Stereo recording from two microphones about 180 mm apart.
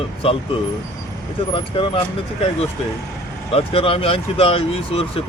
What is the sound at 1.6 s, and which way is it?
Speech, 30° left (ahead or behind).